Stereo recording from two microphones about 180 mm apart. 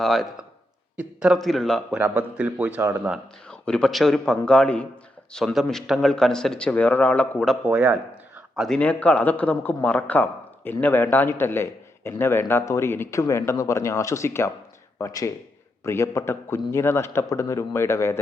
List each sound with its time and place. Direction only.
0.0 s a man's voice: centre (ahead or behind)
2.0 s speech: 10° right (ahead or behind)
3.5 s a man's voice: 5° left (ahead or behind)